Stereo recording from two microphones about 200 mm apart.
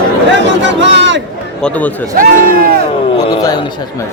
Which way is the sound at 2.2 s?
45° right (ahead or behind).